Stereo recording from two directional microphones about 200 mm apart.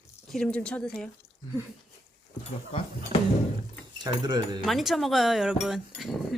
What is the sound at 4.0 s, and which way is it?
Speech, 20° right (ahead or behind).